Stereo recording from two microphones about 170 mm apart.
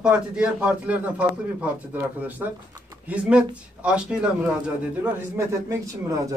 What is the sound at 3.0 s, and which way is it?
A man's voice, 5° right (ahead or behind).